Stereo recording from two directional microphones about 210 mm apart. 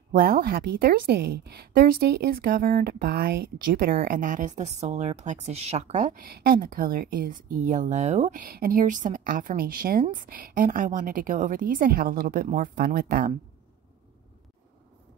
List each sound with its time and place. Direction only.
0.1 s a woman's voice: 45° right (ahead or behind)